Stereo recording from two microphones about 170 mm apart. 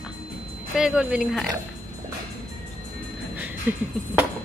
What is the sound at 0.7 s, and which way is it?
Speech, 5° right (ahead or behind).